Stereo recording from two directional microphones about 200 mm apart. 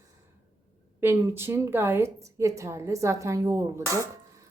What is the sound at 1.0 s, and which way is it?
Speech, 10° right (ahead or behind).